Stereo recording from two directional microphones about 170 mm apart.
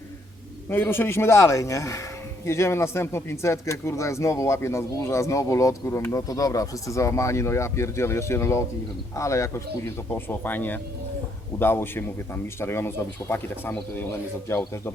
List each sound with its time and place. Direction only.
0.7 s speech: 15° left (ahead or behind)